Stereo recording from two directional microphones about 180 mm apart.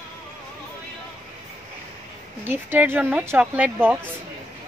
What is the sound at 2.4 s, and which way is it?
Speech, 10° right (ahead or behind).